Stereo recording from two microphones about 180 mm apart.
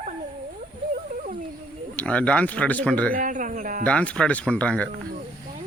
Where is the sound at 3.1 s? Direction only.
45° right (ahead or behind).